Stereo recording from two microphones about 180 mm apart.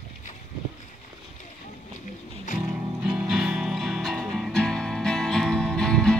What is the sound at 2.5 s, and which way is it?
Music, 45° left (ahead or behind).